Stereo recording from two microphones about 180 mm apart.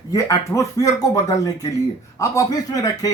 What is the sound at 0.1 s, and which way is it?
Speech, 15° left (ahead or behind).